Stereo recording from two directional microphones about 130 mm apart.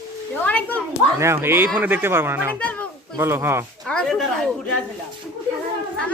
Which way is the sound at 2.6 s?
10° left (ahead or behind).